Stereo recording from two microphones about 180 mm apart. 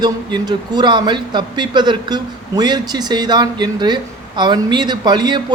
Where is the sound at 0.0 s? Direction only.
25° right (ahead or behind).